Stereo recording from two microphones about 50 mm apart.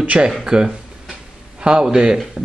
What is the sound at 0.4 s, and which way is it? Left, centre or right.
Speech, centre.